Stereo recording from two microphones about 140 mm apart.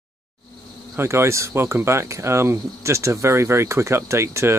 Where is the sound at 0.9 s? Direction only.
20° right (ahead or behind).